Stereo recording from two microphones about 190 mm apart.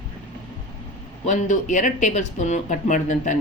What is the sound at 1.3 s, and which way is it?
Speech, 40° left (ahead or behind).